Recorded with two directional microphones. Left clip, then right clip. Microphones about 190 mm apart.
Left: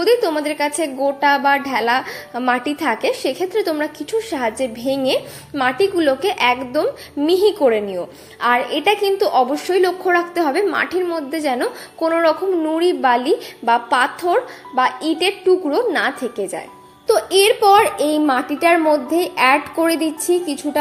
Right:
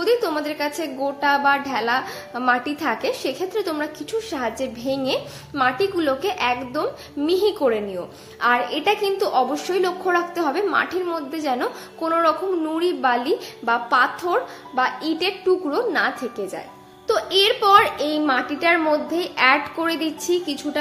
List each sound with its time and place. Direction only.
0.0 s a woman's voice: 5° left (ahead or behind)